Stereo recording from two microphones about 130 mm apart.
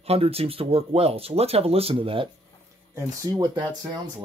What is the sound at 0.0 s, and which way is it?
Speech, 50° right (ahead or behind).